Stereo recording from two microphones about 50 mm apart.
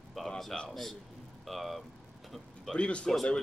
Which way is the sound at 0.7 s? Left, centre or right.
Centre.